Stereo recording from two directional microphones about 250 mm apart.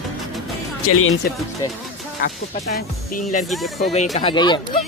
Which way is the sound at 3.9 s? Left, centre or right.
Left.